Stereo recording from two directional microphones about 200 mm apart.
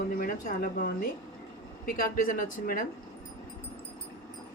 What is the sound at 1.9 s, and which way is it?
Speech, 45° left (ahead or behind).